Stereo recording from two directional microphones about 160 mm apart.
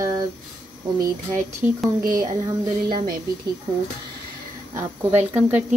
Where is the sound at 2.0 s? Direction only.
60° right (ahead or behind).